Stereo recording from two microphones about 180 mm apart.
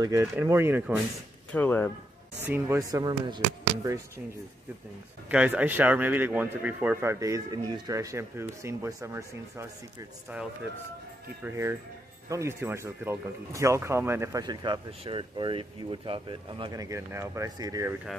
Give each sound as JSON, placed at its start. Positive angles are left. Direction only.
{"t": 0.0, "sound": "speech", "side_deg": -15}
{"t": 1.5, "sound": "speech", "side_deg": 10}
{"t": 2.4, "sound": "speech", "side_deg": -10}
{"t": 5.3, "sound": "speech", "side_deg": -5}
{"t": 11.4, "sound": "speech", "side_deg": -15}